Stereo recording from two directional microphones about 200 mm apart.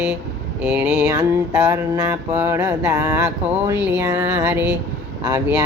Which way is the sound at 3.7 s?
10° right (ahead or behind).